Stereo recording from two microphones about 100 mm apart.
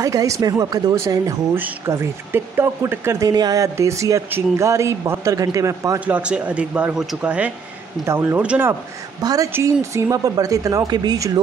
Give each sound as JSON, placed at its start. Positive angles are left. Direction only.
{"t": 0.0, "sound": "speech", "side_deg": -35}
{"t": 3.3, "sound": "speech", "side_deg": -40}
{"t": 5.9, "sound": "speech", "side_deg": -15}
{"t": 8.0, "sound": "speech", "side_deg": -25}
{"t": 8.4, "sound": "speech", "side_deg": -10}
{"t": 9.2, "sound": "speech", "side_deg": -40}